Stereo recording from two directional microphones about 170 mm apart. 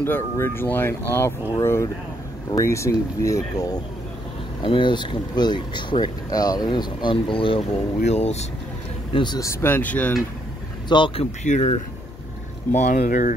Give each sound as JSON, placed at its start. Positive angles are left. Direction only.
{"t": 0.0, "sound": "speech", "side_deg": 15}
{"t": 9.1, "sound": "speech", "side_deg": 25}
{"t": 10.9, "sound": "speech", "side_deg": 30}
{"t": 11.4, "sound": "speech", "side_deg": 40}
{"t": 13.0, "sound": "speech", "side_deg": 60}